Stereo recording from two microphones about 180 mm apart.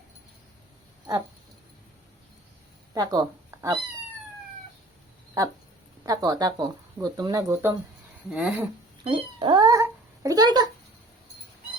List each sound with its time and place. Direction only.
2.9 s speech: 20° right (ahead or behind)
6.1 s speech: 20° right (ahead or behind)
8.3 s speech: 5° right (ahead or behind)
9.0 s cat: 30° right (ahead or behind)